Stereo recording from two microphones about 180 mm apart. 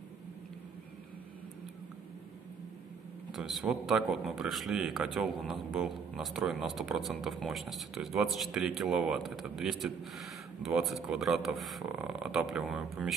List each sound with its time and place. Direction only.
3.3 s a man's voice: centre (ahead or behind)